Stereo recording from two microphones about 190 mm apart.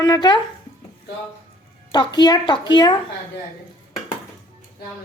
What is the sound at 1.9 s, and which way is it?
A woman's voice, 20° left (ahead or behind).